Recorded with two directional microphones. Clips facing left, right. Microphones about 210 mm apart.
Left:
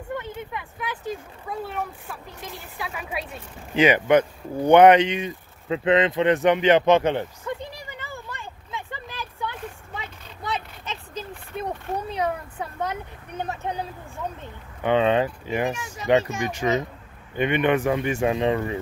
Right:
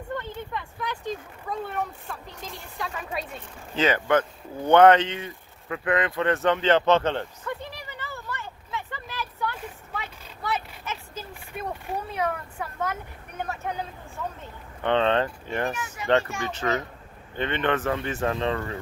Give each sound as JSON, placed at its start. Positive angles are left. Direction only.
{"t": 0.1, "sound": "speech", "side_deg": 10}
{"t": 7.4, "sound": "a sound", "side_deg": 15}
{"t": 14.8, "sound": "speech", "side_deg": 10}
{"t": 15.7, "sound": "a child's voice", "side_deg": 25}